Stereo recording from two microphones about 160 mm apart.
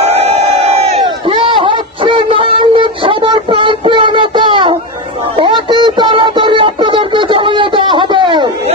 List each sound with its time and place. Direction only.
0.2 s crowd: 40° right (ahead or behind)
5.4 s synthetic singing: 30° right (ahead or behind)